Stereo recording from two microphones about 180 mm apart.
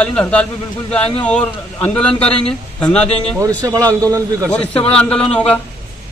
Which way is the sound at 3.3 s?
20° right (ahead or behind).